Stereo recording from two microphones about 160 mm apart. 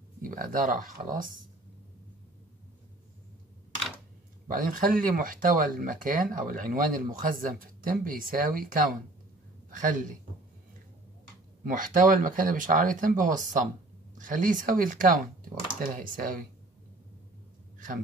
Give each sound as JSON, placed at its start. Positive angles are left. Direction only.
{"t": 0.2, "sound": "speech", "side_deg": -60}
{"t": 4.5, "sound": "speech", "side_deg": -60}
{"t": 9.7, "sound": "a woman's voice", "side_deg": -55}
{"t": 11.6, "sound": "speech", "side_deg": -55}
{"t": 17.7, "sound": "a sound", "side_deg": -55}